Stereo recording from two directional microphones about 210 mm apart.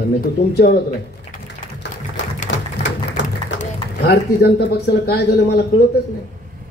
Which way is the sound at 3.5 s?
50° left (ahead or behind).